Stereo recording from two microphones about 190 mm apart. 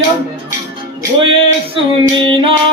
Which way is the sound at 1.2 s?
30° right (ahead or behind).